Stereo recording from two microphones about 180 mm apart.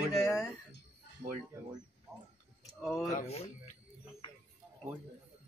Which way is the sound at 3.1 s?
35° left (ahead or behind).